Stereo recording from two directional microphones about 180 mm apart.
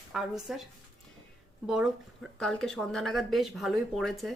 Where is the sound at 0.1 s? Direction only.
5° right (ahead or behind).